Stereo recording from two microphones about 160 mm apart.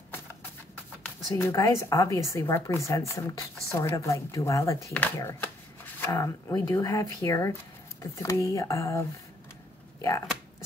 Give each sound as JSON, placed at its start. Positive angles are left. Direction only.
{"t": 1.0, "sound": "a woman's voice", "side_deg": 15}